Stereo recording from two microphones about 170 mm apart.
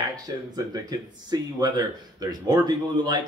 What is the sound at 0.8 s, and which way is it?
Speech, 25° right (ahead or behind).